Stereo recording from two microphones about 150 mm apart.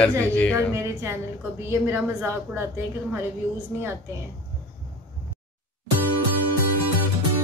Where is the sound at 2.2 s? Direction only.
15° right (ahead or behind).